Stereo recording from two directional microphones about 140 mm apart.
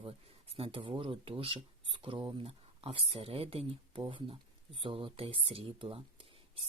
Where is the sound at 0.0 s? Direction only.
40° right (ahead or behind).